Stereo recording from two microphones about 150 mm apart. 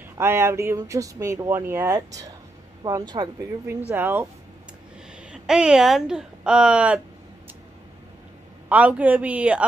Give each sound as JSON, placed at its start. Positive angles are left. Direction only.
{"t": 0.2, "sound": "a woman's voice", "side_deg": -15}
{"t": 5.3, "sound": "a woman's voice", "side_deg": -5}
{"t": 8.6, "sound": "a woman's voice", "side_deg": -10}